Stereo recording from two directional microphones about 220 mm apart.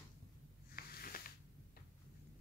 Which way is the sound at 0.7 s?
40° left (ahead or behind).